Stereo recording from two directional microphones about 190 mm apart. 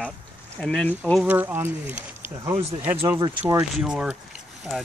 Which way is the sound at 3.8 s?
5° right (ahead or behind).